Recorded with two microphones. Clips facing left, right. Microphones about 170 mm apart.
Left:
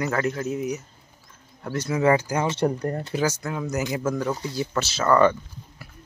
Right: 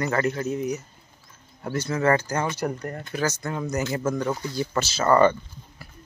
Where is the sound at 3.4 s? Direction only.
5° left (ahead or behind).